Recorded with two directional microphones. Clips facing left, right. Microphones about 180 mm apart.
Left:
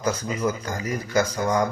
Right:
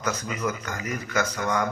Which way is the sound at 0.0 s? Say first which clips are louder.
Left 4 dB; 30° left (ahead or behind).